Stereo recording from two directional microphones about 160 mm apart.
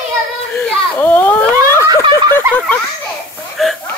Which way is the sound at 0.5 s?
10° left (ahead or behind).